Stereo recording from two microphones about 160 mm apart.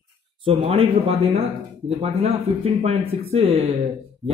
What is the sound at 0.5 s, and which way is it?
Speech, 35° right (ahead or behind).